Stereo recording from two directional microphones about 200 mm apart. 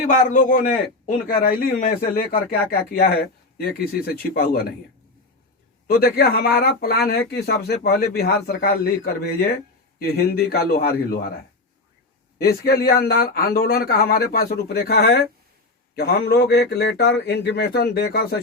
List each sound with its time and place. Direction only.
0.0 s a man's voice: 40° left (ahead or behind)
5.9 s a man's voice: 50° left (ahead or behind)
12.4 s a man's voice: 50° left (ahead or behind)